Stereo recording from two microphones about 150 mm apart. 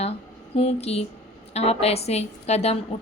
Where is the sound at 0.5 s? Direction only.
45° left (ahead or behind).